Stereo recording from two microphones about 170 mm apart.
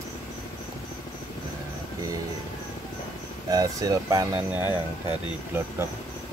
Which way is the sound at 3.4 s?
20° right (ahead or behind).